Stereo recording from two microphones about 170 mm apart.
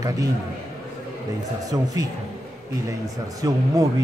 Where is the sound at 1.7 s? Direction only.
25° right (ahead or behind).